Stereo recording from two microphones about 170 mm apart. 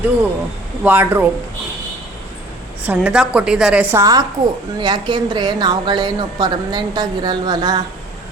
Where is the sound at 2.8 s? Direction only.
10° right (ahead or behind); by 7.8 s 25° right (ahead or behind).